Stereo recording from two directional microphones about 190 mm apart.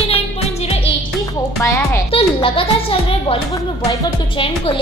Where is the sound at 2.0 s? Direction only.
30° left (ahead or behind).